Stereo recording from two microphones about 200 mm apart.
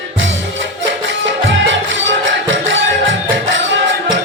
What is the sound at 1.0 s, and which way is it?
Music, 70° right (ahead or behind).